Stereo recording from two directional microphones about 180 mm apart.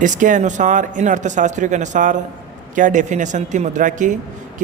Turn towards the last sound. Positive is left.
turn(degrees=-45)  # may be behind; listen again after turning